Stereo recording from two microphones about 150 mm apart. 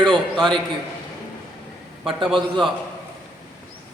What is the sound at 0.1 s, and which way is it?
Speech, 5° left (ahead or behind).